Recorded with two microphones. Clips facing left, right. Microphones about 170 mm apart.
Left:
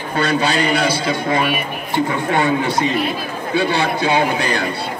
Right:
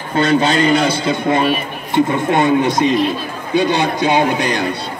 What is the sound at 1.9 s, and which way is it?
A man's voice, 20° right (ahead or behind).